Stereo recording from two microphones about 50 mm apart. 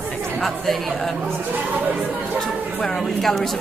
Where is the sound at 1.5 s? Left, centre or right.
Right.